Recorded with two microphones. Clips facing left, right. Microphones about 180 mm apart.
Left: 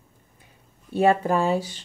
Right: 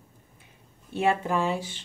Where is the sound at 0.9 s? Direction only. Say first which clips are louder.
Left 5 dB; 40° left (ahead or behind).